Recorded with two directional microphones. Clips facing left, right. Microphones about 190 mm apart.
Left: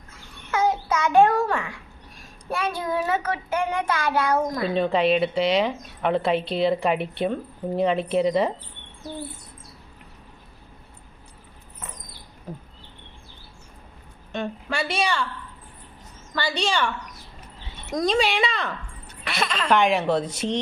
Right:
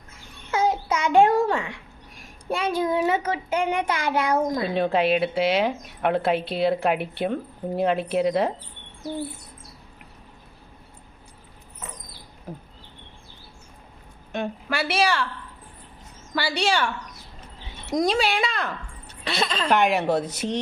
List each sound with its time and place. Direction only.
0.5 s babbling: 20° right (ahead or behind)
2.5 s a child's voice: 20° right (ahead or behind)
4.8 s a woman's voice: 5° right (ahead or behind)
14.3 s a woman's voice: 5° right (ahead or behind)
16.3 s a woman's voice: 10° right (ahead or behind)
17.9 s a woman's voice: 10° right (ahead or behind)
19.2 s a woman's voice: 30° right (ahead or behind)
19.7 s a woman's voice: 5° right (ahead or behind)